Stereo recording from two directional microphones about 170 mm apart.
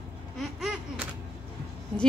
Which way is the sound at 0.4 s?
Centre (ahead or behind).